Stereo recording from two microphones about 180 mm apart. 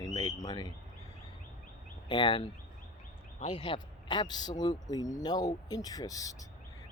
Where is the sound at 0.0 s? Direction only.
20° left (ahead or behind).